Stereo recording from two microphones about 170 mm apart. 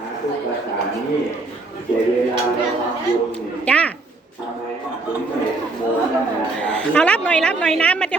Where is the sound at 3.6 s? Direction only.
5° left (ahead or behind).